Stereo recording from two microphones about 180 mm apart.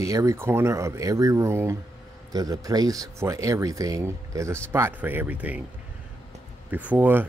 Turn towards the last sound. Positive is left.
turn(degrees=-10)  # may be behind; listen again after turning